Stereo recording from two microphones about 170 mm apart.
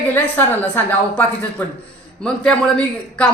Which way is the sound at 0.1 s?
10° left (ahead or behind).